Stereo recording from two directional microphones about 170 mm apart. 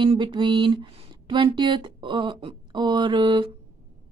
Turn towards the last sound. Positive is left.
turn(degrees=-30)  # may be behind; listen again after turning